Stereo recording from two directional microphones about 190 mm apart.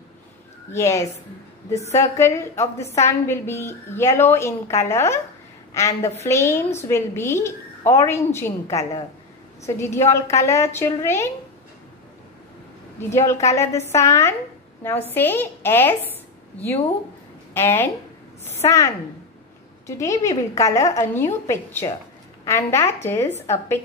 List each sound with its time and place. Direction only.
0.7 s a woman's voice: 15° left (ahead or behind)
10.0 s a woman's voice: 15° left (ahead or behind)
13.1 s a woman's voice: 15° left (ahead or behind)
20.0 s a woman's voice: 15° left (ahead or behind)